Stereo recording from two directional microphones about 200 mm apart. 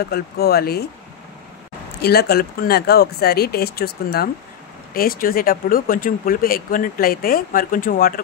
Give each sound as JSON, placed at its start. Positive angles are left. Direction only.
{"t": 0.1, "sound": "speech", "side_deg": 50}
{"t": 2.0, "sound": "speech", "side_deg": 50}